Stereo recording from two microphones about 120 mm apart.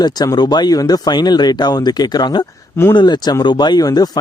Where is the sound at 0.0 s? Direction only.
35° left (ahead or behind).